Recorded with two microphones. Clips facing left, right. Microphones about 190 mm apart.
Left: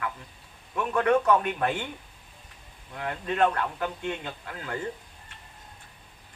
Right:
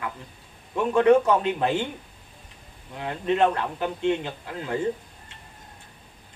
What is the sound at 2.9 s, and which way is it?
A man's voice, 20° right (ahead or behind).